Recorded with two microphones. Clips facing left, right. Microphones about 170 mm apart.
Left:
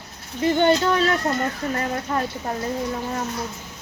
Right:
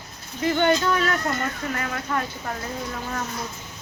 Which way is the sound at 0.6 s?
25° left (ahead or behind).